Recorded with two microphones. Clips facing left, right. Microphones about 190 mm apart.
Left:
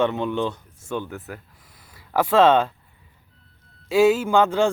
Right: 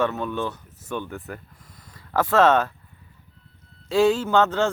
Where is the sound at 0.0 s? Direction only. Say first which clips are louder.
Left 3 dB; 20° left (ahead or behind).